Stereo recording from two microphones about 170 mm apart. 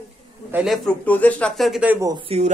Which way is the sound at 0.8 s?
10° left (ahead or behind).